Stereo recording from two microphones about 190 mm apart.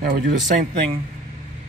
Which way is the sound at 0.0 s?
45° right (ahead or behind).